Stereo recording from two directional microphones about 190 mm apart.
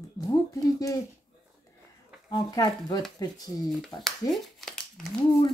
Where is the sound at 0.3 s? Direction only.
20° left (ahead or behind).